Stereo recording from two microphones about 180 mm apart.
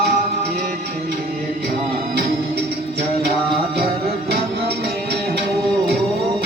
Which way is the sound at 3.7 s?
60° right (ahead or behind).